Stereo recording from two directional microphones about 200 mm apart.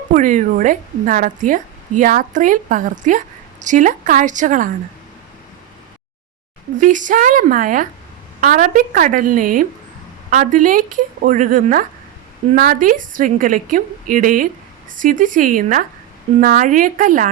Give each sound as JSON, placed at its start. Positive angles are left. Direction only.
{"t": 0.1, "sound": "a woman's voice", "side_deg": -40}
{"t": 6.7, "sound": "a woman's voice", "side_deg": -40}